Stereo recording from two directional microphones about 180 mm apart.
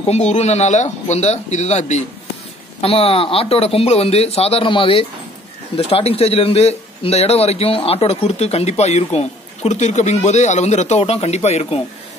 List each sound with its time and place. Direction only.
0.0 s a man's voice: 40° left (ahead or behind)